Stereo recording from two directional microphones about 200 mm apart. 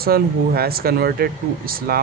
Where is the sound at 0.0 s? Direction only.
50° right (ahead or behind).